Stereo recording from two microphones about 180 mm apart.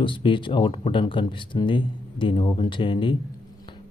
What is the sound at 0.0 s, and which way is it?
Speech, 25° left (ahead or behind).